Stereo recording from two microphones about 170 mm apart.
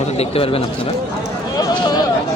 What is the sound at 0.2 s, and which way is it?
Speech, 35° left (ahead or behind).